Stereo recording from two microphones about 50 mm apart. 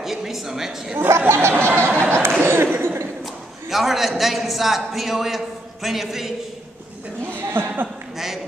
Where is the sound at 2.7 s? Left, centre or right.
Right.